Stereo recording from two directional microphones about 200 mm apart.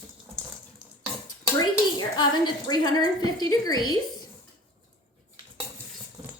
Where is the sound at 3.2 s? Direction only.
20° left (ahead or behind).